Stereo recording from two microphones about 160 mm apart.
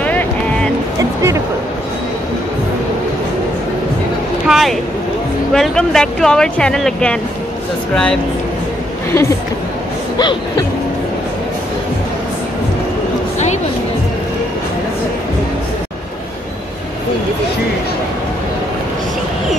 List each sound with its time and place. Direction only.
0.0 s music: 10° left (ahead or behind)
0.9 s music: 20° right (ahead or behind)
4.5 s a sound: centre (ahead or behind)
5.5 s speech: 5° left (ahead or behind)